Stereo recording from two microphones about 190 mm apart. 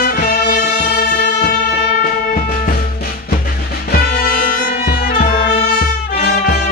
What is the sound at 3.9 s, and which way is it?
Music, 55° left (ahead or behind).